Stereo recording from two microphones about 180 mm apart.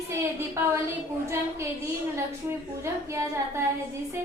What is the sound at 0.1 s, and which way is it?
Speech, 15° right (ahead or behind).